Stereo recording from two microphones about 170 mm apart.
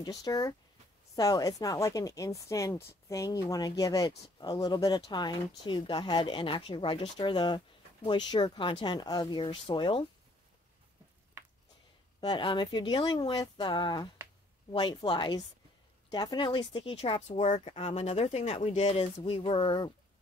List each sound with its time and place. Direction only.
0.0 s speech: 20° left (ahead or behind)
11.4 s a sound: 15° right (ahead or behind)
12.2 s a woman's voice: 25° left (ahead or behind)